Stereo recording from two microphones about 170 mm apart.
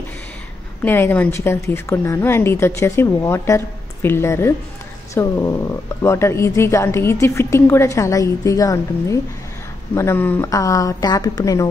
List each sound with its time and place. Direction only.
0.8 s a woman's voice: 10° left (ahead or behind)